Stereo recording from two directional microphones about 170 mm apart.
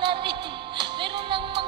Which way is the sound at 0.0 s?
30° right (ahead or behind).